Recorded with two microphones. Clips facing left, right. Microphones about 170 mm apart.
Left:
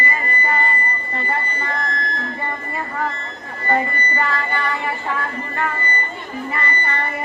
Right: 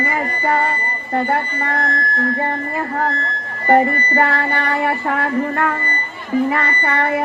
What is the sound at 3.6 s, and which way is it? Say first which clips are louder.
Music: right 7 dB; 50° right (ahead or behind).